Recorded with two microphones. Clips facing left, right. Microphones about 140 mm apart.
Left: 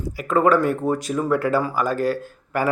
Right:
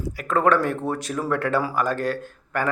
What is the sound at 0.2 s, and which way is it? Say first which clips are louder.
A man's voice: left 3 dB; centre (ahead or behind).